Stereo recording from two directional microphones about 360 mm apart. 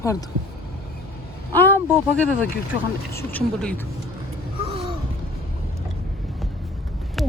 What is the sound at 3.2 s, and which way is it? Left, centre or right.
Speech, centre.